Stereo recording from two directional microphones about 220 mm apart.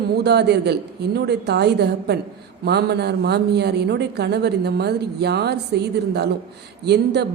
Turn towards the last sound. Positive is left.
turn(degrees=-50)  # may be behind; listen again after turning